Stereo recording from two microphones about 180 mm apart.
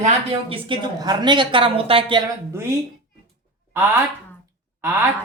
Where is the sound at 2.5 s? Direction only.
15° right (ahead or behind).